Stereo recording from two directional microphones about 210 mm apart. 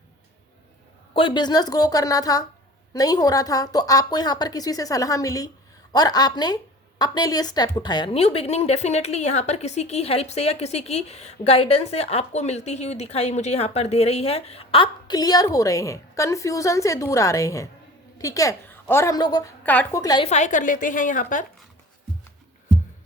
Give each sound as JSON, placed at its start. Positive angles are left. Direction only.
{"t": 1.1, "sound": "a woman's voice", "side_deg": 20}
{"t": 20.2, "sound": "a woman's voice", "side_deg": 35}